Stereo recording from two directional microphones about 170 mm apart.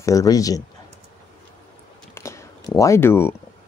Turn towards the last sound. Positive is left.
turn(degrees=15)  # may be behind; listen again after turning